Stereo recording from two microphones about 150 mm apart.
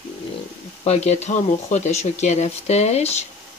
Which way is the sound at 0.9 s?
45° left (ahead or behind).